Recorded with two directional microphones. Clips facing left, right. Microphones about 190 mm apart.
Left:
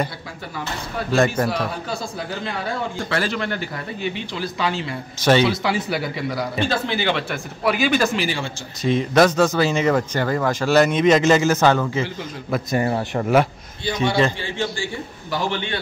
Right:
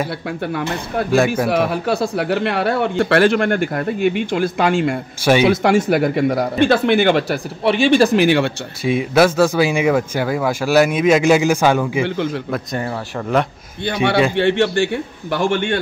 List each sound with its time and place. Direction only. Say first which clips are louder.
1.1 s speech: right 2 dB; 10° right (ahead or behind)
1.5 s speech: right 8 dB; 65° right (ahead or behind); by 7.3 s 45° right (ahead or behind)
7.6 s speech: right 6 dB; 30° right (ahead or behind)
8.2 s speech: right 11 dB; 65° right (ahead or behind)
8.8 s speech: right 2 dB; 10° right (ahead or behind)
12.4 s speech: left 1 dB; centre (ahead or behind)
14.3 s speech: right 11 dB; 70° right (ahead or behind); by 15.8 s 50° right (ahead or behind)